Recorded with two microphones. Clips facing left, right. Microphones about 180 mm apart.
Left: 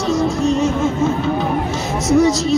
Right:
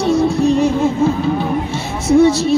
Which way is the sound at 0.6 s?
35° right (ahead or behind).